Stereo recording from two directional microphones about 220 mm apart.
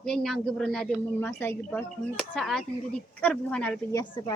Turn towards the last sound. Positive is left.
turn(degrees=5)  # may be behind; listen again after turning